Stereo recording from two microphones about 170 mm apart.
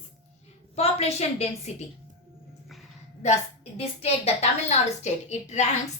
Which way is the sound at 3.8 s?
35° left (ahead or behind).